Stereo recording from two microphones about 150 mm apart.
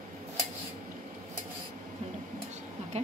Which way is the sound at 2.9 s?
45° right (ahead or behind).